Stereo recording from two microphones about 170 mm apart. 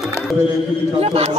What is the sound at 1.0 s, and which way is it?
Speech, 40° right (ahead or behind).